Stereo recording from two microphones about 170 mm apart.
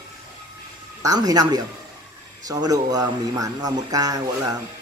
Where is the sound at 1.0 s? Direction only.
25° right (ahead or behind).